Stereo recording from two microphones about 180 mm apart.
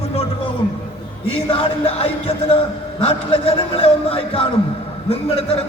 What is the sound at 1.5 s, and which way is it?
A man's voice, 30° left (ahead or behind).